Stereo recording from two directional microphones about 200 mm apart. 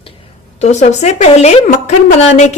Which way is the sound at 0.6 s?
35° left (ahead or behind).